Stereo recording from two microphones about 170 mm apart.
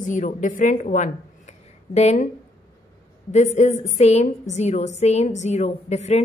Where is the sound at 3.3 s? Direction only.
45° left (ahead or behind).